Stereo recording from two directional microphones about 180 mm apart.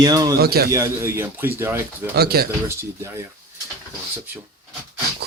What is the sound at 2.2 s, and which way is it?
Speech, 60° right (ahead or behind).